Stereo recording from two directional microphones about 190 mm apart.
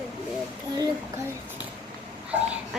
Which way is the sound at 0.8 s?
15° right (ahead or behind).